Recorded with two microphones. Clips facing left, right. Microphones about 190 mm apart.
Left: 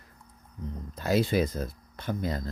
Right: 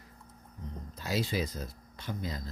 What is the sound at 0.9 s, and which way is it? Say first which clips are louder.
Speech: left 8 dB; 55° left (ahead or behind).